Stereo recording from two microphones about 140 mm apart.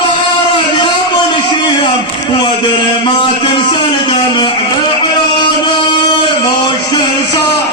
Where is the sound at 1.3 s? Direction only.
35° left (ahead or behind).